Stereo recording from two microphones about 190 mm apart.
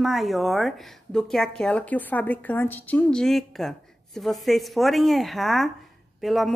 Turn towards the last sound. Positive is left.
turn(degrees=0)  # may be behind; listen again after turning